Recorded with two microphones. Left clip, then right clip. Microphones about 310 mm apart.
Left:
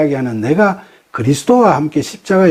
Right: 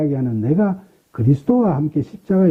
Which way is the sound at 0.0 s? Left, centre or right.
Centre.